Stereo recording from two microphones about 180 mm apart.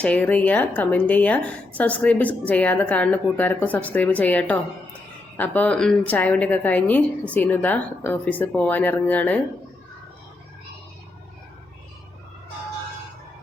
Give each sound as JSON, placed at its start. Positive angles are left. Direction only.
{"t": 0.0, "sound": "a woman's voice", "side_deg": 5}